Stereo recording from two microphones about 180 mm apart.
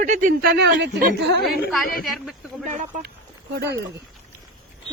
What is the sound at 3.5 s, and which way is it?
Speech, 70° right (ahead or behind).